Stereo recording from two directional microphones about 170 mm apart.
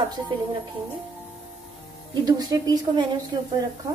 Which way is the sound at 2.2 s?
20° right (ahead or behind).